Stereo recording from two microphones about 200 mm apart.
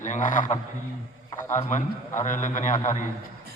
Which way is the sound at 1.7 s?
40° left (ahead or behind).